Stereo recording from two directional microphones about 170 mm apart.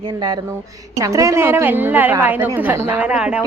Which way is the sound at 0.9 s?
20° right (ahead or behind).